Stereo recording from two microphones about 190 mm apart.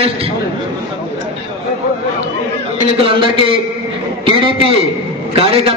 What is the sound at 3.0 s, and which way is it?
A man's voice, 30° right (ahead or behind).